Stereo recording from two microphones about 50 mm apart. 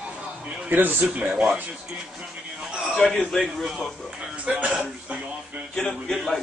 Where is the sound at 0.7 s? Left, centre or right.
Right.